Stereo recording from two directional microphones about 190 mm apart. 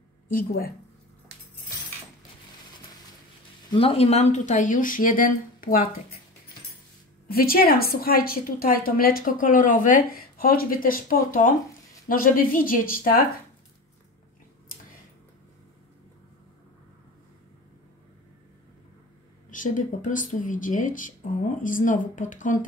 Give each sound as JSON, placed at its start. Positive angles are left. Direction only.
{"t": 0.3, "sound": "a woman's voice", "side_deg": 50}
{"t": 3.7, "sound": "speech", "side_deg": 30}
{"t": 7.2, "sound": "a woman's voice", "side_deg": 50}
{"t": 19.5, "sound": "a woman's voice", "side_deg": 40}